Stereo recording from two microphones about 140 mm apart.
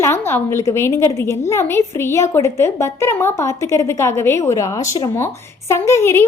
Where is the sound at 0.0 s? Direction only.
15° left (ahead or behind).